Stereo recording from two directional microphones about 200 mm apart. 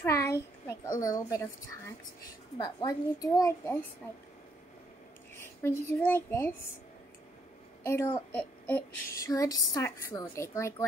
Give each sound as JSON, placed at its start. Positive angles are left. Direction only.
{"t": 0.0, "sound": "a sound", "side_deg": 15}
{"t": 1.0, "sound": "speech", "side_deg": 15}
{"t": 2.5, "sound": "a woman's voice", "side_deg": 20}
{"t": 5.4, "sound": "a child's voice", "side_deg": 10}
{"t": 7.8, "sound": "a woman's voice", "side_deg": 10}